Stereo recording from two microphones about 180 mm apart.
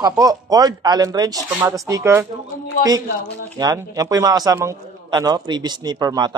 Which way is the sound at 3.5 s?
20° right (ahead or behind).